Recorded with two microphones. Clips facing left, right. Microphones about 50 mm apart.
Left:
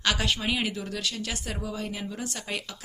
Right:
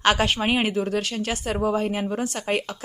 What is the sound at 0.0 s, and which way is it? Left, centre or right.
Speech, right.